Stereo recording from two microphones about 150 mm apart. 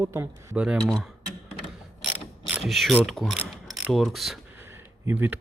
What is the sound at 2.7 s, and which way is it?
Speech, centre (ahead or behind).